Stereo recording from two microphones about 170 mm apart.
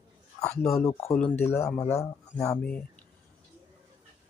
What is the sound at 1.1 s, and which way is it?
Speech, 10° left (ahead or behind).